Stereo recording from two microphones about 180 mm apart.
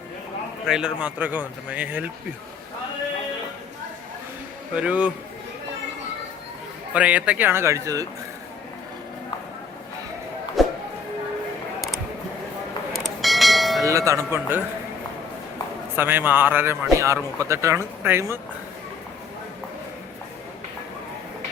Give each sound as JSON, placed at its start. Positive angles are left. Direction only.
{"t": 0.7, "sound": "speech", "side_deg": -5}
{"t": 4.7, "sound": "speech", "side_deg": -5}
{"t": 6.9, "sound": "speech", "side_deg": -5}
{"t": 10.6, "sound": "a sound", "side_deg": 0}
{"t": 12.9, "sound": "church bell", "side_deg": 0}
{"t": 13.8, "sound": "speech", "side_deg": -15}
{"t": 16.0, "sound": "speech", "side_deg": -10}